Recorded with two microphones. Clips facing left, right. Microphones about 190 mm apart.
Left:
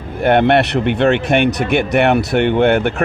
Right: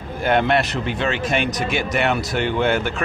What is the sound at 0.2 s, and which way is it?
Speech, 60° left (ahead or behind).